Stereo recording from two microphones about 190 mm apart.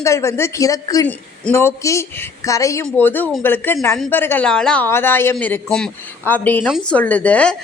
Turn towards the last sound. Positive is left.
turn(degrees=5)  # may be behind; listen again after turning